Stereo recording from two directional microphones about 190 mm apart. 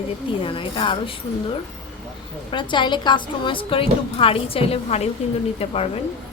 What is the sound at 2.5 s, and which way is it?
A woman's voice, 25° left (ahead or behind).